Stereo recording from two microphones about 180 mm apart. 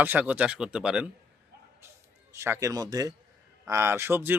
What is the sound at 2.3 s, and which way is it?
A man's voice, 15° right (ahead or behind).